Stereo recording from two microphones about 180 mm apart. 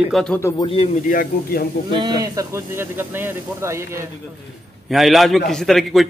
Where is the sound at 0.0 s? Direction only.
Centre (ahead or behind).